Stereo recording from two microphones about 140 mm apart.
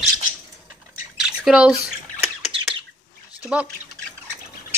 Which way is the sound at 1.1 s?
5° right (ahead or behind).